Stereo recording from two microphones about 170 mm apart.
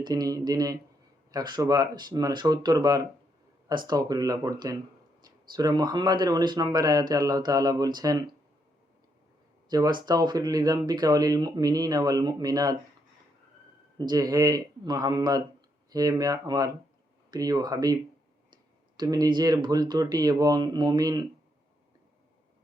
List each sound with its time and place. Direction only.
0.0 s speech: 20° right (ahead or behind)
9.6 s speech: 25° right (ahead or behind)
14.0 s speech: 25° right (ahead or behind)
18.9 s speech: 25° right (ahead or behind)